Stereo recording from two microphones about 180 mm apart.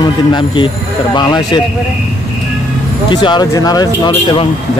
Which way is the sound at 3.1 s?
25° left (ahead or behind).